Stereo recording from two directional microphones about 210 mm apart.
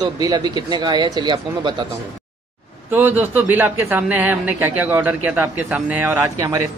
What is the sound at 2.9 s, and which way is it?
A man's voice, 10° right (ahead or behind).